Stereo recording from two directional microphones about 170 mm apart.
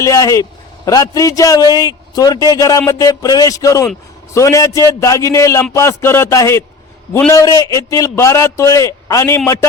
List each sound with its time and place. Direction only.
0.0 s a man's voice: 20° left (ahead or behind)